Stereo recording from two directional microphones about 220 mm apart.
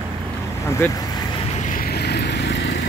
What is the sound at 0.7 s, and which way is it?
Speech, 10° left (ahead or behind).